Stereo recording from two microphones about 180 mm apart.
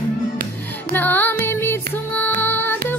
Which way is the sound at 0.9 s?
10° left (ahead or behind).